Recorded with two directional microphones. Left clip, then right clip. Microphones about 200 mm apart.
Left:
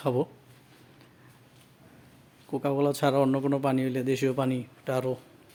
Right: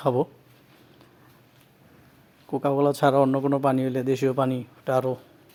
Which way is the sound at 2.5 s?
15° right (ahead or behind).